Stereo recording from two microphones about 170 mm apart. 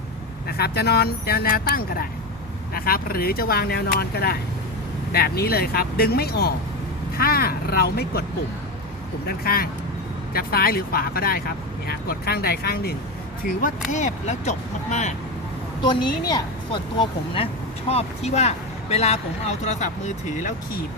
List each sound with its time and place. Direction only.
0.4 s speech: 70° left (ahead or behind)
9.2 s speech: 60° left (ahead or behind)
13.4 s speech: 50° left (ahead or behind)
15.8 s speech: 25° left (ahead or behind); by 20.8 s 45° left (ahead or behind)